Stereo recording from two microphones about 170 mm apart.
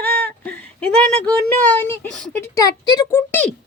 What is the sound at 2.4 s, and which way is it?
Speech, 20° left (ahead or behind).